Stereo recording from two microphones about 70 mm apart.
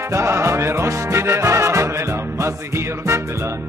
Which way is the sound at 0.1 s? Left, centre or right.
Right.